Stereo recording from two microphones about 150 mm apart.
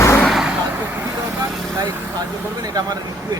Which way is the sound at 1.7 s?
20° right (ahead or behind).